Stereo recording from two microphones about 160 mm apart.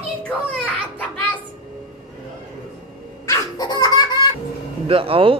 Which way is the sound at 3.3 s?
25° left (ahead or behind).